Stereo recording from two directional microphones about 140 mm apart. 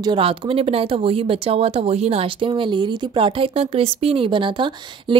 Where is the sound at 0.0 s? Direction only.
40° right (ahead or behind).